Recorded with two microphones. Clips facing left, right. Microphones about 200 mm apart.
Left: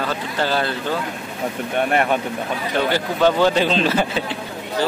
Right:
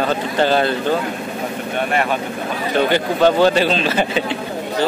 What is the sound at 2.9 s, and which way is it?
A man's voice, 15° right (ahead or behind).